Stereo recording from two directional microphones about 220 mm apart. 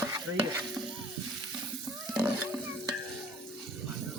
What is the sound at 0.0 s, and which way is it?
Stir, 10° right (ahead or behind).